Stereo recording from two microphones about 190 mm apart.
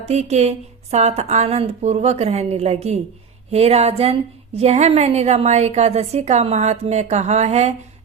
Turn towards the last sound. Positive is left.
turn(degrees=-35)  # may be behind; listen again after turning